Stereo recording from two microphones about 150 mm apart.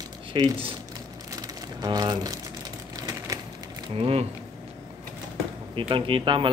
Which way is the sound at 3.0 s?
20° right (ahead or behind).